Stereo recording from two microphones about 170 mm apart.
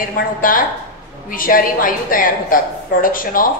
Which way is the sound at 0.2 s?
55° left (ahead or behind).